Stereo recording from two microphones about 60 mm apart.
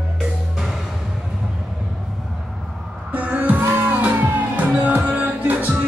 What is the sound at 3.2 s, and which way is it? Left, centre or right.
Music, right.